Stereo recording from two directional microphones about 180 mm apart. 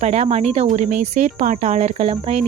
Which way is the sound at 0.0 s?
35° right (ahead or behind).